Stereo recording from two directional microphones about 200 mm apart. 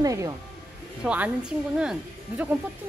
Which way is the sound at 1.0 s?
5° right (ahead or behind).